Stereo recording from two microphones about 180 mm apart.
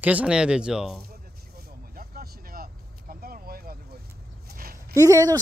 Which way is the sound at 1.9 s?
55° right (ahead or behind).